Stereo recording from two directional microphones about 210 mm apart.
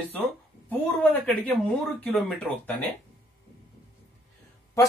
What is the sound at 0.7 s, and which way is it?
Speech, 5° left (ahead or behind).